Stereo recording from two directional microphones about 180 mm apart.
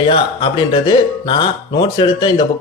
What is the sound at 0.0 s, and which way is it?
Speech, 25° left (ahead or behind).